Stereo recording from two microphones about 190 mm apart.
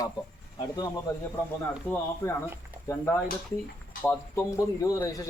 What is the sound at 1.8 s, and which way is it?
Speech, 15° left (ahead or behind).